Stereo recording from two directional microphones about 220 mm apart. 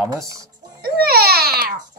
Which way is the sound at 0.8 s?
45° right (ahead or behind).